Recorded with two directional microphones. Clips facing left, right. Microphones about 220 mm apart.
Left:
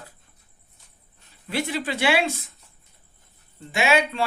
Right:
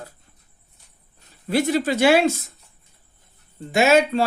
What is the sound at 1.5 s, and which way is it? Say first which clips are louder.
Speech: right 7 dB; 40° right (ahead or behind).